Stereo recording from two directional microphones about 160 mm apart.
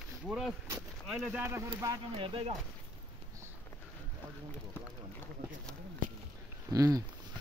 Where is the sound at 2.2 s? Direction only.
35° right (ahead or behind).